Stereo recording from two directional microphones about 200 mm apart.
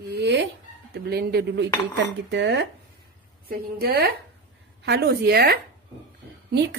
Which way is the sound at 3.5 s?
50° right (ahead or behind).